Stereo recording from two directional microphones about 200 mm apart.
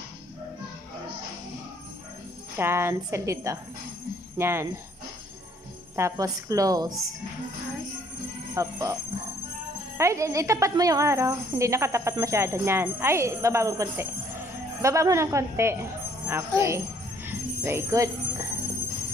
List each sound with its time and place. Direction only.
2.5 s a woman's voice: 10° right (ahead or behind)
5.9 s a woman's voice: 15° right (ahead or behind)
8.5 s a woman's voice: 15° right (ahead or behind)
9.9 s a woman's voice: 15° right (ahead or behind)
17.3 s music: 10° right (ahead or behind)